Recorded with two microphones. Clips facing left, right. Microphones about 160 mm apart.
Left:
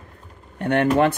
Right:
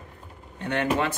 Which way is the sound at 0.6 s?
60° left (ahead or behind).